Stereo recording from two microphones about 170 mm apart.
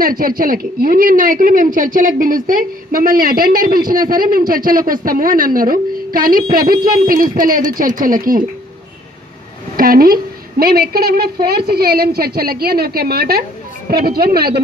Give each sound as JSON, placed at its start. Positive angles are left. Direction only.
{"t": 0.0, "sound": "a woman's voice", "side_deg": -60}
{"t": 9.8, "sound": "a woman's voice", "side_deg": -60}